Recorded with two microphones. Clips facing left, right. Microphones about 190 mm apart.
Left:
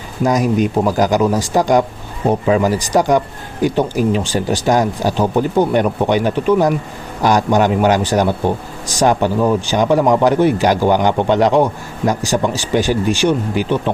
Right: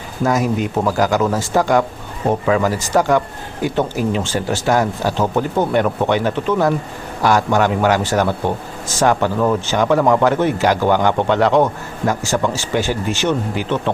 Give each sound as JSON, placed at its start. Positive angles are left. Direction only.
{"t": 0.3, "sound": "speech", "side_deg": 15}